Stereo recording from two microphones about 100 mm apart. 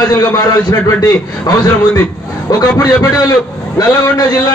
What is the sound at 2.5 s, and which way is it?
Speech, 35° left (ahead or behind).